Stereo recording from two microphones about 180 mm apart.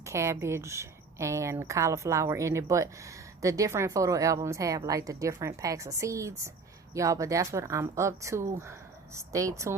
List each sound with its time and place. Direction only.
0.0 s a woman's voice: 15° right (ahead or behind)